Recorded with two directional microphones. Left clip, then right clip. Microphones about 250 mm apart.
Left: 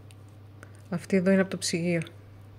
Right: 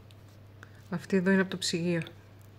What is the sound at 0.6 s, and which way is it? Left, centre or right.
Speech, centre.